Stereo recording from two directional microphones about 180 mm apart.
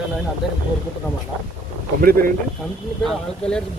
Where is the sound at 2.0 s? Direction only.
50° right (ahead or behind).